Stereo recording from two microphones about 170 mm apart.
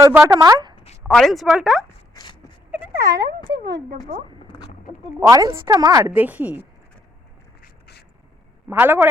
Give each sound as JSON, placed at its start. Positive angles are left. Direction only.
{"t": 0.0, "sound": "speech", "side_deg": -15}
{"t": 1.0, "sound": "speech", "side_deg": 0}
{"t": 2.7, "sound": "speech", "side_deg": -20}
{"t": 3.6, "sound": "speech", "side_deg": -75}
{"t": 5.2, "sound": "a woman's voice", "side_deg": -20}
{"t": 6.1, "sound": "a woman's voice", "side_deg": -10}
{"t": 7.6, "sound": "a sound", "side_deg": 70}
{"t": 8.7, "sound": "a woman's voice", "side_deg": -10}